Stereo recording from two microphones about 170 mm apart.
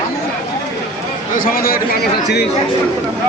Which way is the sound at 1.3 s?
55° left (ahead or behind).